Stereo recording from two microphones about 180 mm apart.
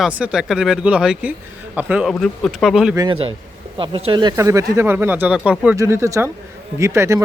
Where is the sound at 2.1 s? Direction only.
5° left (ahead or behind).